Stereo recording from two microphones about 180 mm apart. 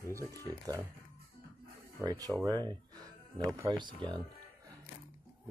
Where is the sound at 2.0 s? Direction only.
20° right (ahead or behind).